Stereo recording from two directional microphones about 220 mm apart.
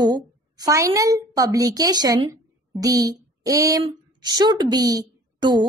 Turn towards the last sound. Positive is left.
turn(degrees=-20)  # may be behind; listen again after turning